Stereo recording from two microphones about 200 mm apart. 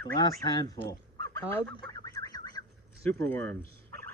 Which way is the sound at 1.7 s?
15° left (ahead or behind).